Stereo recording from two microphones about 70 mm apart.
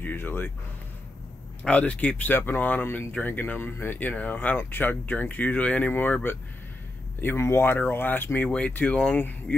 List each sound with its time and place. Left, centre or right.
0.0 s speech: left
1.6 s speech: centre
7.2 s speech: left
8.5 s speech: centre